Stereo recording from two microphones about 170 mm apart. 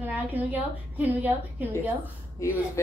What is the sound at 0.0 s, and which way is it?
A woman's voice, 10° right (ahead or behind).